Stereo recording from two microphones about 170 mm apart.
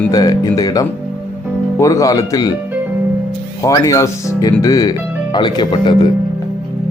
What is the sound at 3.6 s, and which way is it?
Speech, 20° left (ahead or behind).